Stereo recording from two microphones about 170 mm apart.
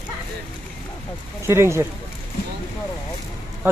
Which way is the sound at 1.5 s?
15° right (ahead or behind).